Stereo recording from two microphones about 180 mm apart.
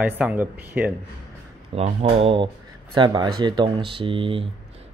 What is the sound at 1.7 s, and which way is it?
A man's voice, 35° right (ahead or behind).